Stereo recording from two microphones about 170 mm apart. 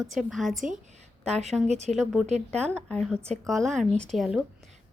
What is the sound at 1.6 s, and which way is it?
Speech, 40° right (ahead or behind).